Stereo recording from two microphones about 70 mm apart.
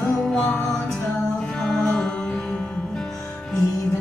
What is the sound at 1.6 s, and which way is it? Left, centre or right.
Music, centre.